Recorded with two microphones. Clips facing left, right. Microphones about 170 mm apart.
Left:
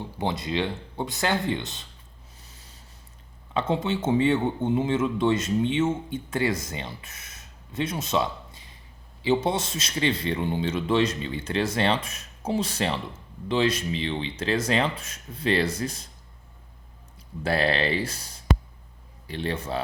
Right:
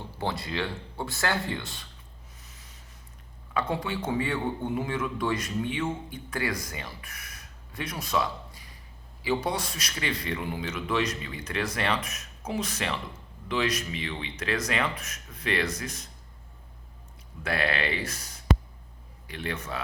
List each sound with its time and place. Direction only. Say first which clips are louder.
0.0 s speech: left 3 dB; 20° left (ahead or behind)
2.4 s a sound: left 1 dB; 30° left (ahead or behind)
3.5 s speech: left 4 dB; 25° left (ahead or behind)
17.4 s speech: left 5 dB; 30° left (ahead or behind)